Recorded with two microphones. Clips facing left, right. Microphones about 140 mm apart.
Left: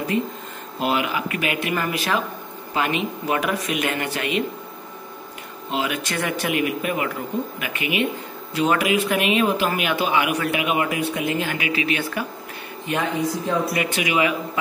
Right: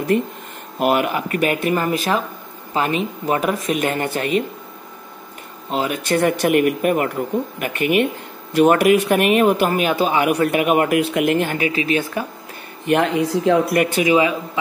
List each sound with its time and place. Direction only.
0.1 s speech: 60° right (ahead or behind); by 4.4 s 40° right (ahead or behind)
5.7 s speech: 40° right (ahead or behind)
9.7 s speech: 40° right (ahead or behind); by 11.4 s 60° right (ahead or behind)
11.4 s speech: 40° right (ahead or behind)
12.8 s speech: 65° right (ahead or behind)
14.1 s a man's voice: 25° right (ahead or behind)